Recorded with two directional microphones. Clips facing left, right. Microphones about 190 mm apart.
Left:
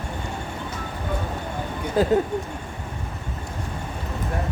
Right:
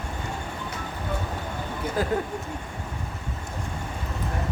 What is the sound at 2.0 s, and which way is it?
Speech, 25° left (ahead or behind).